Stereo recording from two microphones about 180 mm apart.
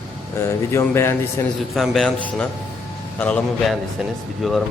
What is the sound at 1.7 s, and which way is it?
A man's voice, centre (ahead or behind).